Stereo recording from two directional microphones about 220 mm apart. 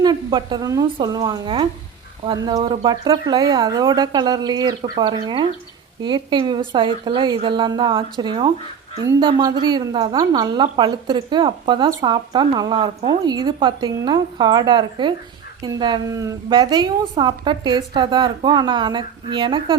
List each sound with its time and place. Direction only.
0.0 s a woman's voice: 20° right (ahead or behind)